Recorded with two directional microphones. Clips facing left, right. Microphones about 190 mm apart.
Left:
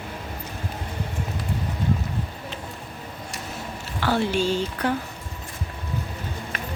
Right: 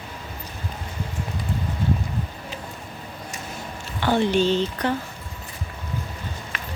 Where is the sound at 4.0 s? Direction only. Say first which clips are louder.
Right 3 dB; 5° left (ahead or behind).